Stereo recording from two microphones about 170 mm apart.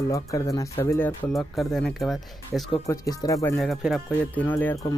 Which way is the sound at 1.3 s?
Centre (ahead or behind).